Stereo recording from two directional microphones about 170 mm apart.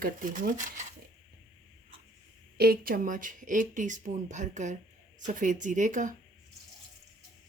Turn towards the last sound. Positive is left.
turn(degrees=-50)  # may be behind; listen again after turning